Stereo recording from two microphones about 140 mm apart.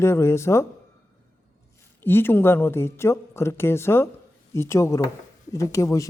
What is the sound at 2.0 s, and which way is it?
Speech, 15° left (ahead or behind).